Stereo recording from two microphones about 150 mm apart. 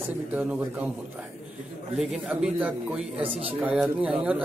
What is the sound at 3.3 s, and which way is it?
Speech, 40° right (ahead or behind).